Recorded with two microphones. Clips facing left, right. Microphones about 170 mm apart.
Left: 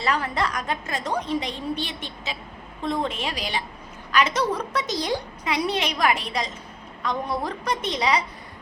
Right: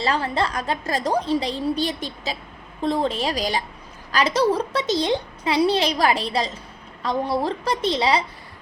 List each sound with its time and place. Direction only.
0.0 s a woman's voice: 30° right (ahead or behind)